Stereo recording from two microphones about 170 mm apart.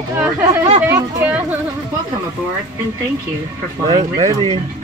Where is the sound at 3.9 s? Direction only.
35° right (ahead or behind).